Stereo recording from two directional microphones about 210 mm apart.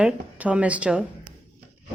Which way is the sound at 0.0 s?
5° right (ahead or behind).